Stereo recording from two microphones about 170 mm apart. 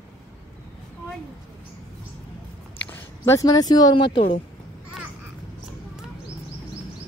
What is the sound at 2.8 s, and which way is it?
Speech, 15° left (ahead or behind).